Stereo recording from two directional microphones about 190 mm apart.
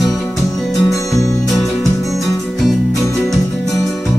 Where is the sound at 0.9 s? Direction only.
15° left (ahead or behind).